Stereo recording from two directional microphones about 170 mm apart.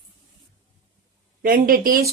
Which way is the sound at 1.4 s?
60° right (ahead or behind).